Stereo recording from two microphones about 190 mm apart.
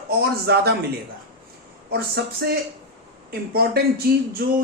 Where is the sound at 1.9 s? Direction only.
55° right (ahead or behind).